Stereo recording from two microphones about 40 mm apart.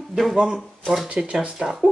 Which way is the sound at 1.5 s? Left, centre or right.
Centre.